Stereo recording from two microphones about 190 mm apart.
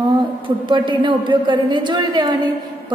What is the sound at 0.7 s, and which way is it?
A woman's voice, 25° right (ahead or behind).